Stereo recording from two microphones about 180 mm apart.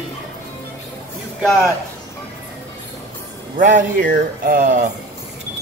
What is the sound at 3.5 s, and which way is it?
Speech, 45° right (ahead or behind).